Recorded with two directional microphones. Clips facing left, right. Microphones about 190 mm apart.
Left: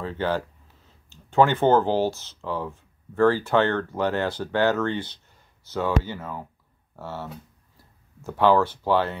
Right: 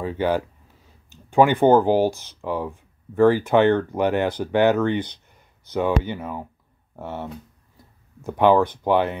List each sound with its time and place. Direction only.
0.0 s speech: 15° right (ahead or behind)